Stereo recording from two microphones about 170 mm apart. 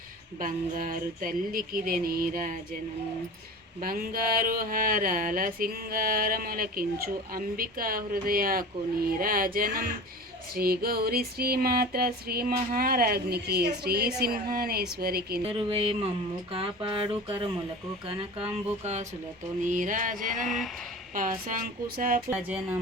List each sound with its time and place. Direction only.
0.3 s a sound: 50° right (ahead or behind)
3.8 s a sound: 60° right (ahead or behind)
15.4 s speech: 35° right (ahead or behind)
18.5 s speech: 40° right (ahead or behind)
20.3 s speech: centre (ahead or behind)
21.1 s speech: 50° right (ahead or behind)
22.3 s music: 10° right (ahead or behind)